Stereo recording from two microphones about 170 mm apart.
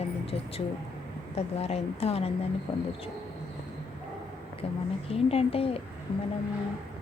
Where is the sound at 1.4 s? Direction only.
40° left (ahead or behind).